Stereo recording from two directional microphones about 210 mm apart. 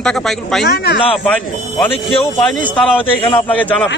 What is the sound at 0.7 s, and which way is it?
Speech, 50° left (ahead or behind).